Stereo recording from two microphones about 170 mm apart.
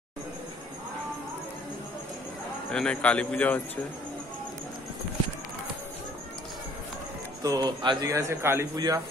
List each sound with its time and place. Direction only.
2.7 s speech: 5° left (ahead or behind)
7.4 s speech: 25° right (ahead or behind)